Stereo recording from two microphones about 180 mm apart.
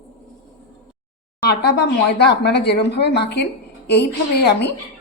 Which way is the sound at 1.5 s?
60° left (ahead or behind).